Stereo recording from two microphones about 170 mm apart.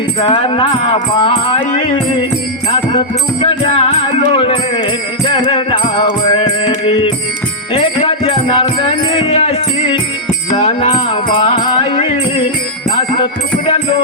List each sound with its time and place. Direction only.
0.2 s music: 30° left (ahead or behind)
3.4 s music: 35° left (ahead or behind)